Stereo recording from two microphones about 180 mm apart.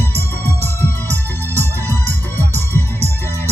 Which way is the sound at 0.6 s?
10° left (ahead or behind).